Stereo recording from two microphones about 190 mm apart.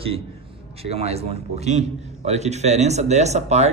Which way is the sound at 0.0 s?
30° right (ahead or behind).